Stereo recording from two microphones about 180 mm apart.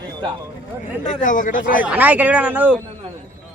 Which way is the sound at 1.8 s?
10° right (ahead or behind).